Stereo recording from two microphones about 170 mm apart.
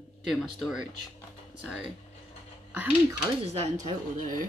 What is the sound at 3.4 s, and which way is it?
Speech, 40° right (ahead or behind).